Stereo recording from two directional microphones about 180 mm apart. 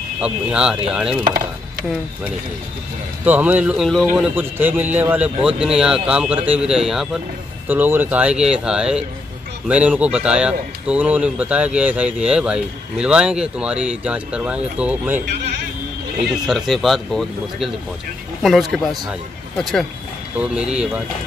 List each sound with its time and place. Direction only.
0.2 s a man's voice: 5° right (ahead or behind)
1.2 s chopping: 55° right (ahead or behind)
3.3 s speech: 10° right (ahead or behind)
4.1 s a man's voice: 10° right (ahead or behind)
16.3 s a man's voice: centre (ahead or behind)